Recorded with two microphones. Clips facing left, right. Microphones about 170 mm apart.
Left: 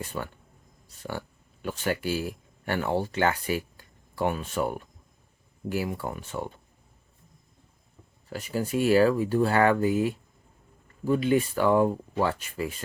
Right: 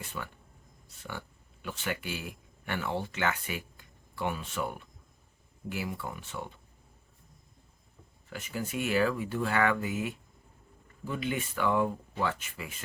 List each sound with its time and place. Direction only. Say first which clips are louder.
0.0 s speech: left 6 dB; 40° left (ahead or behind)
1.6 s speech: left 7 dB; 40° left (ahead or behind)
8.3 s speech: left 7 dB; 35° left (ahead or behind)